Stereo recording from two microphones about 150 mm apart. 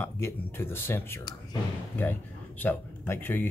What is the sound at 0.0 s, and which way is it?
Speech, 15° left (ahead or behind).